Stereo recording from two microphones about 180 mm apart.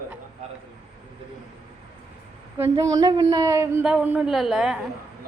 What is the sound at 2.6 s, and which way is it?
A woman's voice, 15° right (ahead or behind).